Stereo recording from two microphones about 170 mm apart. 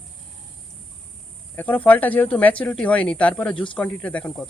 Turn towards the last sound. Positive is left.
turn(degrees=5)  # may be behind; listen again after turning